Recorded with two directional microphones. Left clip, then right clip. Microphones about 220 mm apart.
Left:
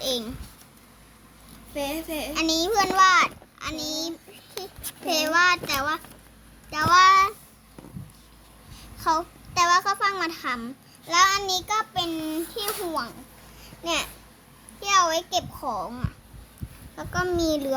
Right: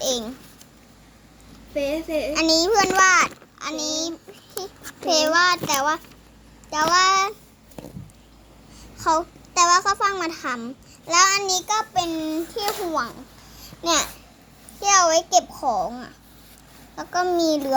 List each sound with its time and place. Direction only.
0.0 s a sound: 10° right (ahead or behind)
1.7 s a woman's voice: 45° left (ahead or behind)
2.3 s a child's voice: 10° right (ahead or behind)
9.0 s a child's voice: 5° right (ahead or behind)
13.6 s babbling: 20° right (ahead or behind)
14.8 s a child's voice: 10° right (ahead or behind)